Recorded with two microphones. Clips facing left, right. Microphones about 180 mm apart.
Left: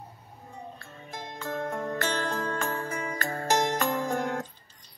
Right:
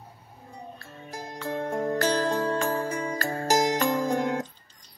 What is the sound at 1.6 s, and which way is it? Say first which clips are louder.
Music: right 5 dB; 30° right (ahead or behind).